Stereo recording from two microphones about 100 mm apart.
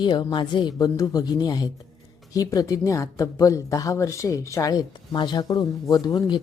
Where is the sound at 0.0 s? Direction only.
45° left (ahead or behind).